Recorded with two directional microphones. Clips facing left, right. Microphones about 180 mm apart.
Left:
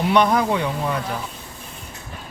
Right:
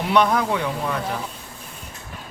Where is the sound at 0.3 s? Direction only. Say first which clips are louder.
Left 2 dB; 5° left (ahead or behind).